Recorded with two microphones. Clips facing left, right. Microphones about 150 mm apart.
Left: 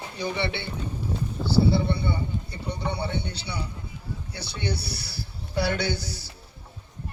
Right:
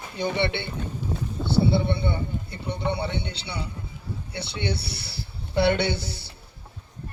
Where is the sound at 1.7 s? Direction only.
25° right (ahead or behind).